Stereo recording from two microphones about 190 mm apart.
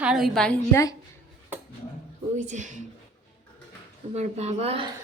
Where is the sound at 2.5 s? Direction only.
40° right (ahead or behind).